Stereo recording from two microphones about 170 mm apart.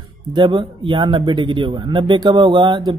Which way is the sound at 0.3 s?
30° right (ahead or behind).